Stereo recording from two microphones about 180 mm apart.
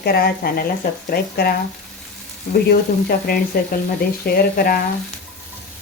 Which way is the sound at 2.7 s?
60° left (ahead or behind).